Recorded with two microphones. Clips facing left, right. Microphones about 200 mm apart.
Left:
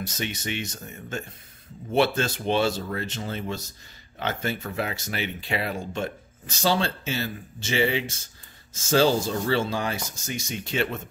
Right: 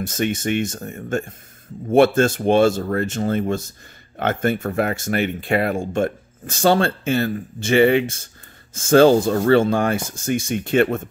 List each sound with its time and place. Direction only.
0.0 s speech: 50° right (ahead or behind)